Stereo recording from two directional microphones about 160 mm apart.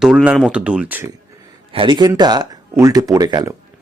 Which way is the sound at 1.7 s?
30° right (ahead or behind).